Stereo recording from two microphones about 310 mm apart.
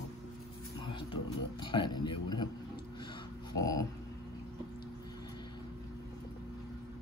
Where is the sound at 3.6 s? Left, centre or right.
Centre.